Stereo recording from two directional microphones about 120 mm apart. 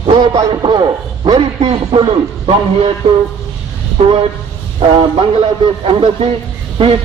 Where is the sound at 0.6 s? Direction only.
40° right (ahead or behind).